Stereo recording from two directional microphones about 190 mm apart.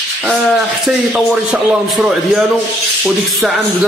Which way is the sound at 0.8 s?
5° right (ahead or behind).